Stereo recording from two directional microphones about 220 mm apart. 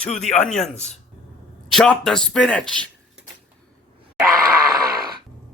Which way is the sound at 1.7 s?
Centre (ahead or behind).